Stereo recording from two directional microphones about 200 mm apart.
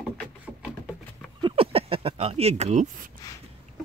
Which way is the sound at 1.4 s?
25° right (ahead or behind).